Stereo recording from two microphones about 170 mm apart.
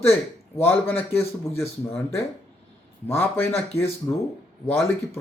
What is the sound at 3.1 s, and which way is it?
Speech, 15° left (ahead or behind).